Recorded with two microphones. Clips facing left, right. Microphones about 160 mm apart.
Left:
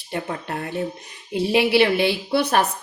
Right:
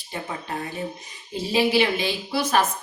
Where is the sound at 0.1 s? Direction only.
60° left (ahead or behind).